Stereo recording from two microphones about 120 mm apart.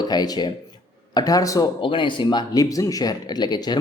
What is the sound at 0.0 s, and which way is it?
Speech, 35° left (ahead or behind).